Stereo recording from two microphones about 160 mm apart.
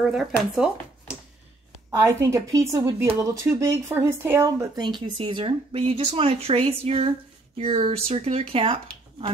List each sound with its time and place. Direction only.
0.0 s speech: 5° right (ahead or behind)
1.9 s speech: 15° right (ahead or behind); by 9.3 s 35° right (ahead or behind)